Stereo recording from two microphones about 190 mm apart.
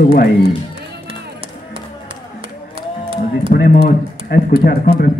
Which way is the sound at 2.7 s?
30° right (ahead or behind).